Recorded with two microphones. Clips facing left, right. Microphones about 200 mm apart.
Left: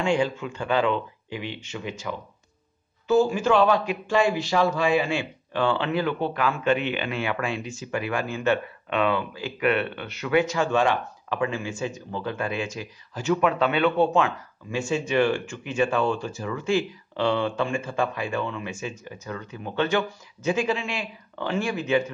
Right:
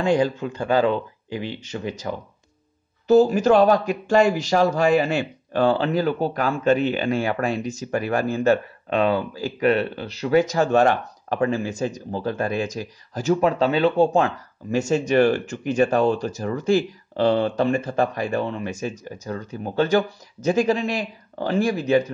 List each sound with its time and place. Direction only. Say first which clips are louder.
0.0 s a man's voice: right 4 dB; 40° right (ahead or behind)